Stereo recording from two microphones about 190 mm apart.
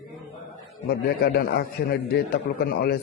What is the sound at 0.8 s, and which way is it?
A man's voice, 55° left (ahead or behind).